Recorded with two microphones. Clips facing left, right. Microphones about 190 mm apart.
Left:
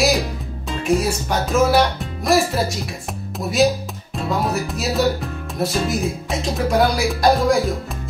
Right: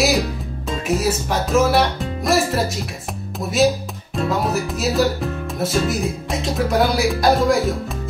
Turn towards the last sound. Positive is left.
turn(degrees=0)  # may be behind; listen again after turning